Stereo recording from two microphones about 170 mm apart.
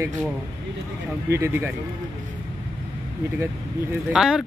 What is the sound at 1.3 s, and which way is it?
Speech, 15° right (ahead or behind).